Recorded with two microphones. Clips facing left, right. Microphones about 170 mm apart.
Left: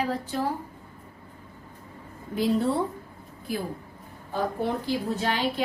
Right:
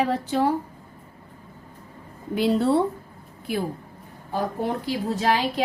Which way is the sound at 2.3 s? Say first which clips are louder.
Right 3 dB; 75° right (ahead or behind).